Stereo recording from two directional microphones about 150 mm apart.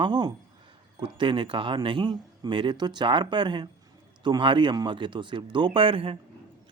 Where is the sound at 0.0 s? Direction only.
30° right (ahead or behind).